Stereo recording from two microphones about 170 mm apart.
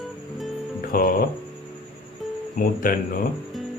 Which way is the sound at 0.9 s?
60° left (ahead or behind).